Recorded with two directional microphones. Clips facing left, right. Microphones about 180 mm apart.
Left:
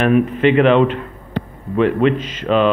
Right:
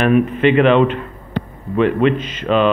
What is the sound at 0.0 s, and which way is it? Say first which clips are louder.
Speech: even; 35° left (ahead or behind).